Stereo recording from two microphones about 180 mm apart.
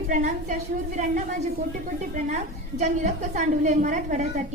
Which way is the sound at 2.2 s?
40° right (ahead or behind).